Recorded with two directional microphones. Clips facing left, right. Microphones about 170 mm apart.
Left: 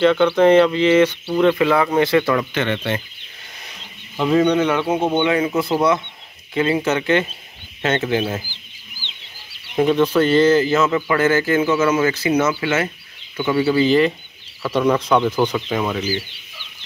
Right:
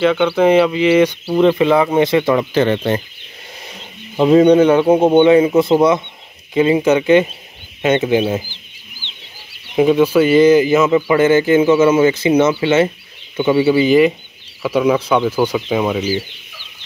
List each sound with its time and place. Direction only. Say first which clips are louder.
0.0 s speech: right 1 dB; 5° right (ahead or behind)
1.2 s speech: right 3 dB; 25° right (ahead or behind)
2.5 s speech: right 7 dB; 35° right (ahead or behind)
4.2 s speech: right 7 dB; 30° right (ahead or behind); by 8.5 s 15° right (ahead or behind)
9.8 s speech: right 4 dB; 10° right (ahead or behind)